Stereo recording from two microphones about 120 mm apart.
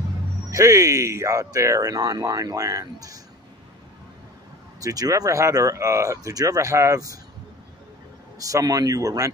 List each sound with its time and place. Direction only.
0.5 s speech: 25° right (ahead or behind)
4.7 s speech: 30° right (ahead or behind)
8.4 s speech: 30° right (ahead or behind)